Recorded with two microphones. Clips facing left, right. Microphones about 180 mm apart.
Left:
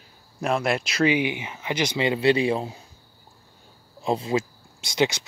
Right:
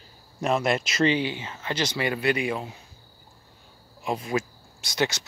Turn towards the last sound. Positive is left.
turn(degrees=20)  # may be behind; listen again after turning